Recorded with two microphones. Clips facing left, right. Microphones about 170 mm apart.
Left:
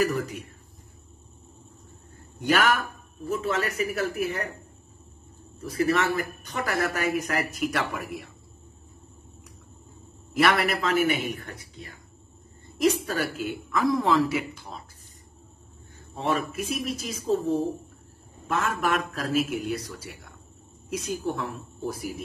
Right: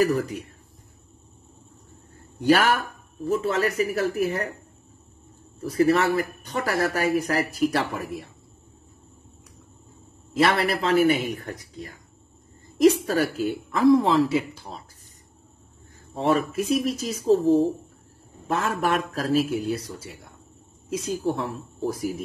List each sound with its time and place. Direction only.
0.0 s speech: 35° right (ahead or behind)
2.4 s speech: 35° right (ahead or behind)
5.6 s speech: 35° right (ahead or behind)
10.3 s speech: 30° right (ahead or behind)
16.2 s speech: 35° right (ahead or behind)
18.5 s a woman's voice: 35° right (ahead or behind)